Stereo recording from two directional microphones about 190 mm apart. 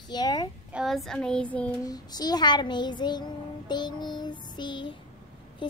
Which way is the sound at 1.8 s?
20° left (ahead or behind).